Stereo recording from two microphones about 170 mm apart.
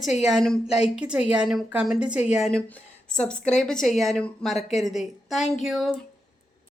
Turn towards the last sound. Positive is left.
turn(degrees=0)  # may be behind; listen again after turning